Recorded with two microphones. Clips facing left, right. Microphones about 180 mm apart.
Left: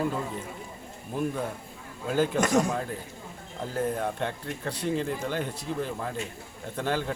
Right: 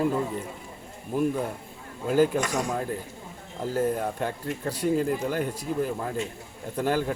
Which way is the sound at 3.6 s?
5° right (ahead or behind).